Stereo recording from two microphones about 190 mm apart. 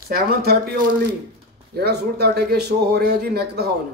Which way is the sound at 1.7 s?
55° right (ahead or behind).